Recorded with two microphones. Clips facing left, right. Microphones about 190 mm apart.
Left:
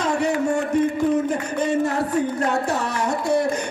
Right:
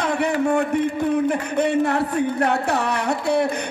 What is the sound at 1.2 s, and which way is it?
Speech, 60° right (ahead or behind).